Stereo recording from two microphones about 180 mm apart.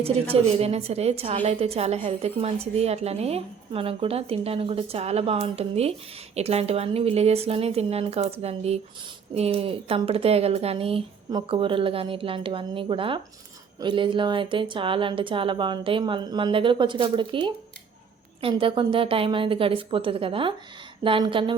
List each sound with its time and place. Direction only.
0.4 s a woman's voice: 35° right (ahead or behind)